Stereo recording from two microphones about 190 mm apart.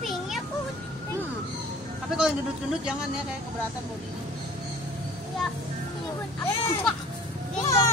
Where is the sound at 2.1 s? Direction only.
5° right (ahead or behind).